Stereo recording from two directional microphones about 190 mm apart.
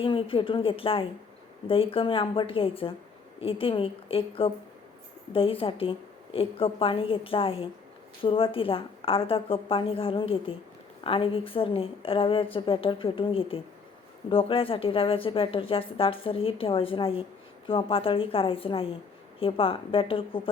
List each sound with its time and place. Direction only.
0.0 s speech: 30° left (ahead or behind)